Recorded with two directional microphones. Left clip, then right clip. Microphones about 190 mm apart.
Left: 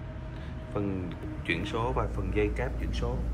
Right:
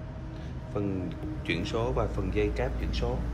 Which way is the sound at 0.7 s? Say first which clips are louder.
Right 1 dB; 15° right (ahead or behind).